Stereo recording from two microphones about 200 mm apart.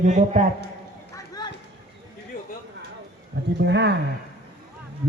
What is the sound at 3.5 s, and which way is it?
Speech, 60° right (ahead or behind).